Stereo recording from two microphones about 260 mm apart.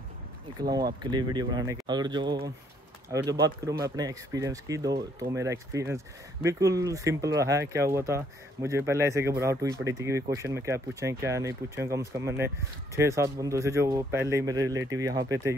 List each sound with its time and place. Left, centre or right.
0.6 s speech: centre